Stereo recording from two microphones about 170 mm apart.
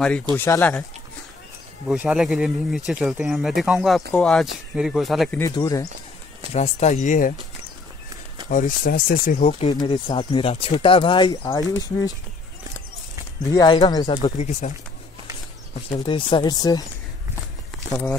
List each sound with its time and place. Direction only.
0.0 s speech: 5° left (ahead or behind)
1.9 s speech: 5° right (ahead or behind)
5.4 s speech: 20° left (ahead or behind)
6.5 s speech: 40° left (ahead or behind)
8.5 s speech: 50° left (ahead or behind)
9.7 s speech: 25° left (ahead or behind)
13.5 s speech: 25° left (ahead or behind)
14.3 s speech: 45° left (ahead or behind)
16.1 s speech: 25° left (ahead or behind)